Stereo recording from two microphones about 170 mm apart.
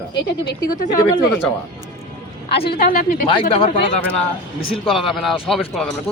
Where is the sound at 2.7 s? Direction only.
55° left (ahead or behind).